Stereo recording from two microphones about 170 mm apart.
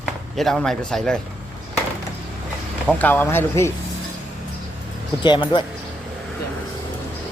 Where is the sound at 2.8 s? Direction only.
10° left (ahead or behind).